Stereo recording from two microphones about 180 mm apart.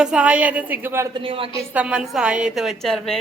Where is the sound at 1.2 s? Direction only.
30° right (ahead or behind).